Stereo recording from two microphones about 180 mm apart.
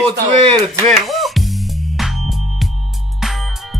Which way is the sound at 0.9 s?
Centre (ahead or behind).